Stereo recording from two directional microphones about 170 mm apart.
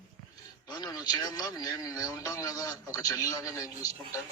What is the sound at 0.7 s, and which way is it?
A man's voice, 25° left (ahead or behind).